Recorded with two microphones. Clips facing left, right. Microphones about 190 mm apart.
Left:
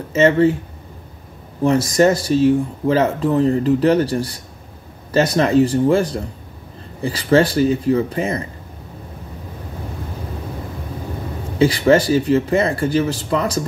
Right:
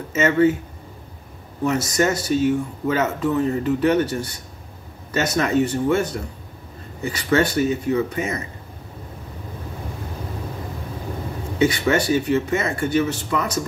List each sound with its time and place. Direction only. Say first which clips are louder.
0.1 s speech: left 4 dB; 35° left (ahead or behind)
1.6 s speech: left 6 dB; 30° left (ahead or behind)
11.5 s speech: left 5 dB; 35° left (ahead or behind)